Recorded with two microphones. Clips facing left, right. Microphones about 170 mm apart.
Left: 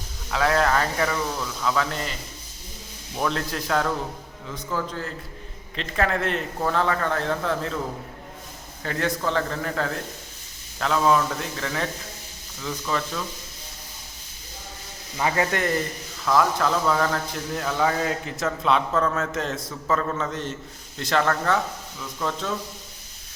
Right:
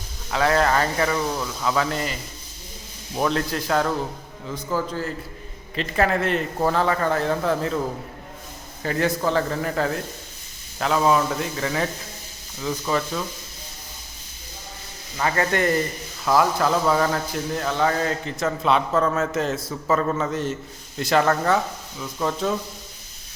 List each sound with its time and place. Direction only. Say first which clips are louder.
0.3 s a man's voice: right 2 dB; centre (ahead or behind)
3.2 s speech: right 3 dB; 5° right (ahead or behind)
8.8 s a man's voice: right 4 dB; 5° right (ahead or behind)
15.5 s a man's voice: right 3 dB; centre (ahead or behind)